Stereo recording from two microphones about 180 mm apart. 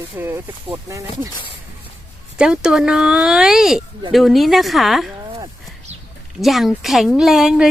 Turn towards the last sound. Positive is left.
turn(degrees=-5)  # may be behind; listen again after turning